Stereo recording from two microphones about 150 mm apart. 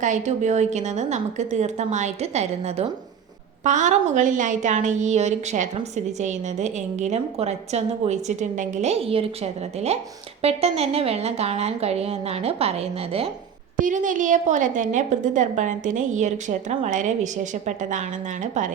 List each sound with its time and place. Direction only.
0.0 s a woman's voice: 50° right (ahead or behind)
13.7 s a woman's voice: 60° right (ahead or behind)